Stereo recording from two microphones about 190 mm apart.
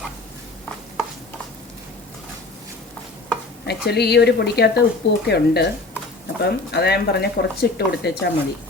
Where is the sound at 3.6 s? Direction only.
60° left (ahead or behind).